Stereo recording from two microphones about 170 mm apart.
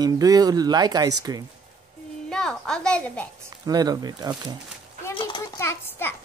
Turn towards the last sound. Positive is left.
turn(degrees=10)  # may be behind; listen again after turning